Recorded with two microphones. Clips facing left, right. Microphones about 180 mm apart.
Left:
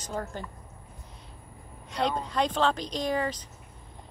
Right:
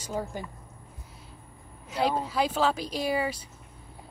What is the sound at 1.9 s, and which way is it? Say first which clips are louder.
Speech: right 1 dB; 5° right (ahead or behind).